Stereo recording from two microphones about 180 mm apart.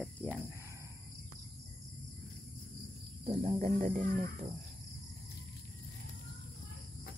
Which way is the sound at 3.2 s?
35° right (ahead or behind).